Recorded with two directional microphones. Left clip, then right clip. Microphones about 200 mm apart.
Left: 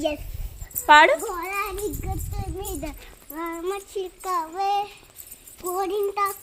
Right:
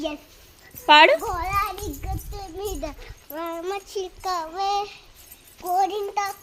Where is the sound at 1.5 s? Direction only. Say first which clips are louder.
Right 3 dB; 15° right (ahead or behind).